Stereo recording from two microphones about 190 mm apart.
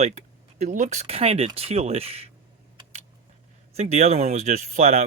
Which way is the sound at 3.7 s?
35° right (ahead or behind).